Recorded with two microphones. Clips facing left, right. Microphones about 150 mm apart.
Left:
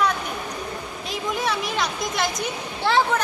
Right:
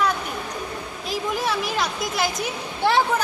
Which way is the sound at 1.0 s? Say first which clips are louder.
Right 1 dB; centre (ahead or behind).